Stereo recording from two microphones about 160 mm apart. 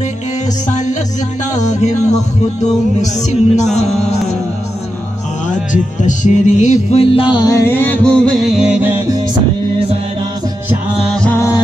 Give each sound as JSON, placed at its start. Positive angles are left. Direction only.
{"t": 0.7, "sound": "music", "side_deg": 50}
{"t": 5.5, "sound": "music", "side_deg": 50}
{"t": 11.3, "sound": "music", "side_deg": 20}